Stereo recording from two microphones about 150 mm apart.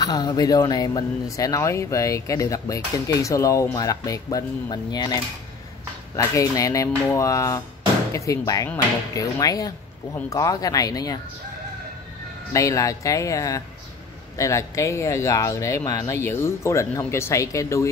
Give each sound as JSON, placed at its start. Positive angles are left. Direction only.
{"t": 0.0, "sound": "speech", "side_deg": 25}
{"t": 12.5, "sound": "speech", "side_deg": 20}